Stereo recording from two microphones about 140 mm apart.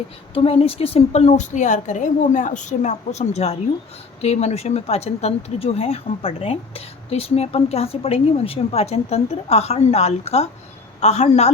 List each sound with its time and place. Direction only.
0.3 s speech: 45° left (ahead or behind)